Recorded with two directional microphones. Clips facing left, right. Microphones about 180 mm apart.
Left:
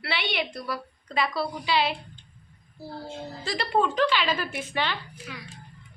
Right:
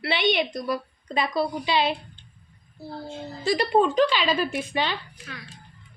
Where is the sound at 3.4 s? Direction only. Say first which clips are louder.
Right 5 dB; 15° right (ahead or behind).